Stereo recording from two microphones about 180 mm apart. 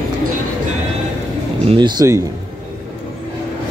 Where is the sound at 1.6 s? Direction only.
30° right (ahead or behind).